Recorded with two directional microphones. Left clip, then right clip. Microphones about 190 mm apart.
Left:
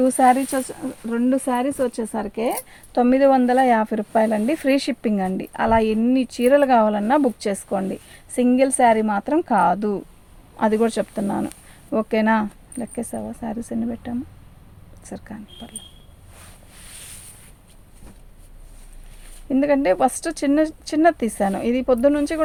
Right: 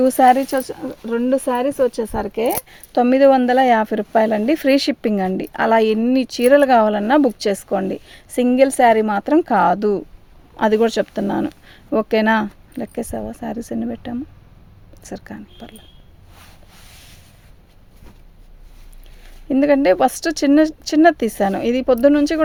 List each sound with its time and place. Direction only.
0.0 s speech: 55° right (ahead or behind)
19.5 s speech: 55° right (ahead or behind)